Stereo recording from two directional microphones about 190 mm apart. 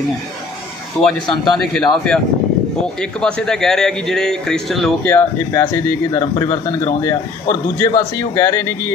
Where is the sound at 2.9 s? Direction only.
5° left (ahead or behind).